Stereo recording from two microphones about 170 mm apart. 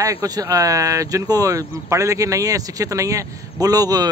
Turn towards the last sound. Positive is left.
turn(degrees=-20)  # may be behind; listen again after turning